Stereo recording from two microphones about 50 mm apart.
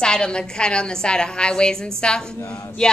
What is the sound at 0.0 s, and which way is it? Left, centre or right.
A woman's voice, centre.